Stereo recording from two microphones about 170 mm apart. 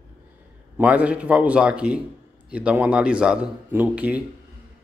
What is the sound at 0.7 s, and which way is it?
A man's voice, 10° right (ahead or behind).